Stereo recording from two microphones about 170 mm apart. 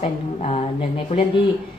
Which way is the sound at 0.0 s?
40° left (ahead or behind).